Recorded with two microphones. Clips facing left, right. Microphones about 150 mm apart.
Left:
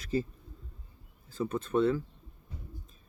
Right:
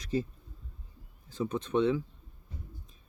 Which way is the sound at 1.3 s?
5° left (ahead or behind).